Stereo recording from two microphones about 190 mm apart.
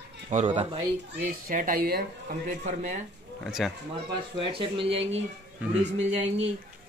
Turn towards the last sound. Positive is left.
turn(degrees=-35)  # may be behind; listen again after turning